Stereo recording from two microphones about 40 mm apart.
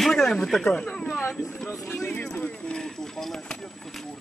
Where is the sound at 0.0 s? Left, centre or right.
Centre.